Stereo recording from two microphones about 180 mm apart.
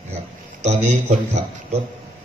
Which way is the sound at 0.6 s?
40° right (ahead or behind).